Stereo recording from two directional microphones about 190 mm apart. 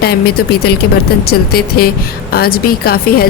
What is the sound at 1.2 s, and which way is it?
Speech, 55° left (ahead or behind).